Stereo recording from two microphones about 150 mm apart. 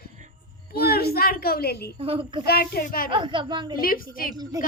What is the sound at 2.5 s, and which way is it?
Speech, 90° left.